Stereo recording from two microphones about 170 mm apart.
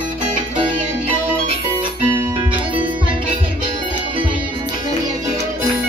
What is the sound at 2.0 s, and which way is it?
Music, 30° right (ahead or behind).